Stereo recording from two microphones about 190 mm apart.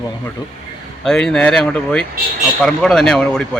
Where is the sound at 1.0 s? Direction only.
Centre (ahead or behind).